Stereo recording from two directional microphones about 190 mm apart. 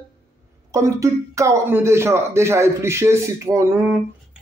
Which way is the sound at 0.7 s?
15° right (ahead or behind).